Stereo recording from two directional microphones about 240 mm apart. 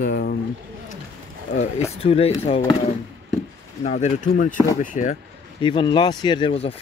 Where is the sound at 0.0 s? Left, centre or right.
Left.